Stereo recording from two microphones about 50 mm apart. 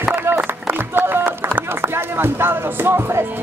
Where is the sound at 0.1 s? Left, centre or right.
Right.